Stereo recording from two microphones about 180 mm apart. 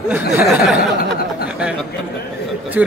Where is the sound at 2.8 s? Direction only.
5° right (ahead or behind).